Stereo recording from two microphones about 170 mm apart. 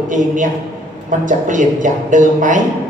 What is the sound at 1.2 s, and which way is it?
Speech, 50° right (ahead or behind).